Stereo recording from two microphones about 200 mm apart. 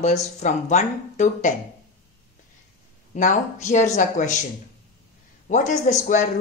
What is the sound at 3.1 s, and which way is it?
Speech, 35° left (ahead or behind).